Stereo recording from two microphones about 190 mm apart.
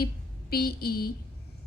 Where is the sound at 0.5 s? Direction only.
55° left (ahead or behind).